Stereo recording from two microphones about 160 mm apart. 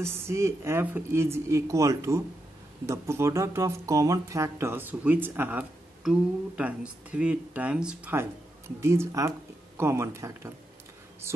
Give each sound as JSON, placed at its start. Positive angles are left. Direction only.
{"t": 0.0, "sound": "speech", "side_deg": -15}